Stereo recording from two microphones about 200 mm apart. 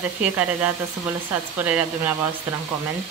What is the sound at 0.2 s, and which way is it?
A woman's voice, 5° right (ahead or behind).